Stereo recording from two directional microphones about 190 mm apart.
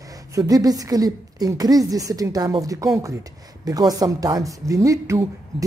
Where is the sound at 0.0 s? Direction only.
20° right (ahead or behind).